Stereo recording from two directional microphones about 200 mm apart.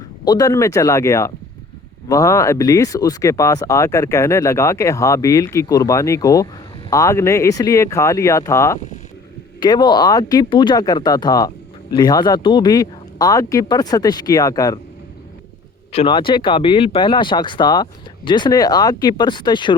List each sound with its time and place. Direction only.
0.3 s speech: 15° left (ahead or behind)
15.9 s speech: 25° left (ahead or behind)